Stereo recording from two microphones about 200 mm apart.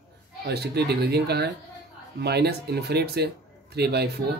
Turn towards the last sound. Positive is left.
turn(degrees=-55)  # may be behind; listen again after turning